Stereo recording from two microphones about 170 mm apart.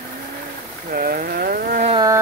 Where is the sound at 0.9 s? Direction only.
60° right (ahead or behind).